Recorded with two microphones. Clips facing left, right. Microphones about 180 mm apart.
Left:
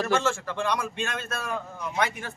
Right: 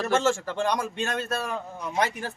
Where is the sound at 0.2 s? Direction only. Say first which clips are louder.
Right 3 dB; 40° right (ahead or behind).